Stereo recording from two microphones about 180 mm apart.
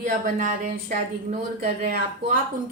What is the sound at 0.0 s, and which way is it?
A woman's voice, 45° right (ahead or behind).